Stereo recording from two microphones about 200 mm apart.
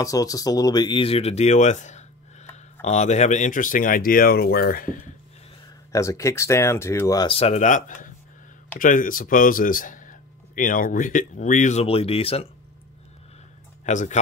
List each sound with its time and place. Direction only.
0.0 s speech: 15° left (ahead or behind); by 5.1 s 45° left (ahead or behind)
5.9 s speech: 15° left (ahead or behind)
13.8 s speech: 35° left (ahead or behind)